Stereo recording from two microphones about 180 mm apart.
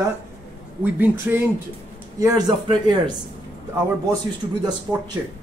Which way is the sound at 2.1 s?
20° right (ahead or behind).